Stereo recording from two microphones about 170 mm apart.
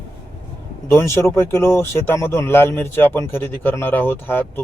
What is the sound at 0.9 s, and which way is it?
Speech, 15° left (ahead or behind).